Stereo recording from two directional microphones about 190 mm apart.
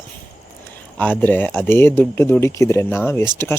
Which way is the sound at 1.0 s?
10° left (ahead or behind).